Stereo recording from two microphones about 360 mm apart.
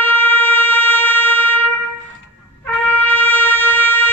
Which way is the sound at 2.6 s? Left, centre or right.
Centre.